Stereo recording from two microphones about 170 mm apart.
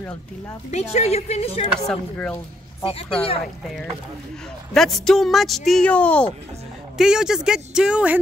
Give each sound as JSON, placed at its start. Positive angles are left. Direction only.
{"t": 0.7, "sound": "speech", "side_deg": 40}
{"t": 1.8, "sound": "speech", "side_deg": 5}
{"t": 2.8, "sound": "speech", "side_deg": 35}
{"t": 4.7, "sound": "speech", "side_deg": 0}
{"t": 7.0, "sound": "speech", "side_deg": -5}